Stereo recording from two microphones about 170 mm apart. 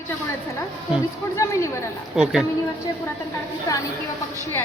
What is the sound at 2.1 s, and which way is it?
Speech, 5° right (ahead or behind).